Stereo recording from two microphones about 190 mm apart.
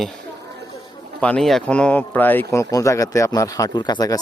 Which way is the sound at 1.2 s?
5° left (ahead or behind).